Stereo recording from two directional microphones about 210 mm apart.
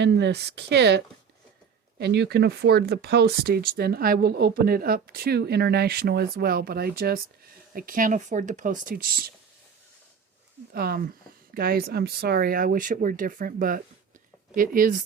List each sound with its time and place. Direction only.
0.0 s speech: 55° right (ahead or behind)
10.7 s speech: 45° right (ahead or behind)